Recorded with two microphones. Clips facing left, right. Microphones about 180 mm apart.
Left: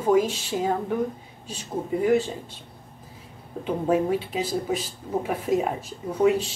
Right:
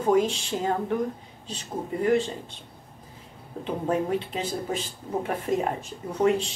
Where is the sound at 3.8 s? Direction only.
5° left (ahead or behind).